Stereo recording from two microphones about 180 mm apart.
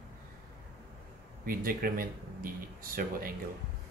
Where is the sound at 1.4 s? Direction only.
55° right (ahead or behind).